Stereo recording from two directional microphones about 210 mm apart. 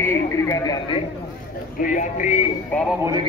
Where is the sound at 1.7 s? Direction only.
40° left (ahead or behind).